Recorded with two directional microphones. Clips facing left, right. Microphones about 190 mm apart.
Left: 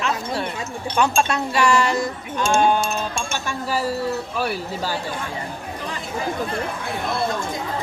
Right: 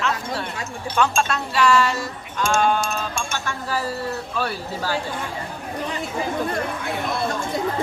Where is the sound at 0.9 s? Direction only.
15° left (ahead or behind).